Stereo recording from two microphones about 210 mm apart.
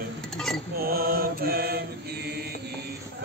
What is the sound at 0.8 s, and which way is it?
Mantra, 45° right (ahead or behind).